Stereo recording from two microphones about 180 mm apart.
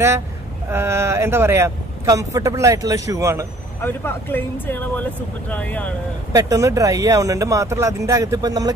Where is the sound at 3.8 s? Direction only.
10° left (ahead or behind).